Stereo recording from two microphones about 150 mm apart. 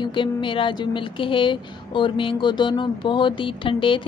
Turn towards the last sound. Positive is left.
turn(degrees=35)  # may be behind; listen again after turning